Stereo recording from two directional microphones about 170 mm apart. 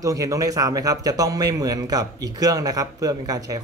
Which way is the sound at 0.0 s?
20° right (ahead or behind).